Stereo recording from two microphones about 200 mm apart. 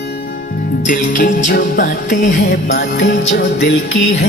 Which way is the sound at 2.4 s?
55° left (ahead or behind).